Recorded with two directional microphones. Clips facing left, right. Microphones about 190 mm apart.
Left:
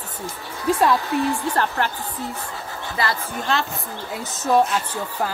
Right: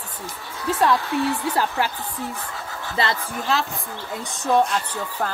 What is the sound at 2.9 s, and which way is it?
Speech, 25° right (ahead or behind).